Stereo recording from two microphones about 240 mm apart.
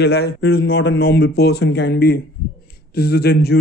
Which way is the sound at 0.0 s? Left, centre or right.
Left.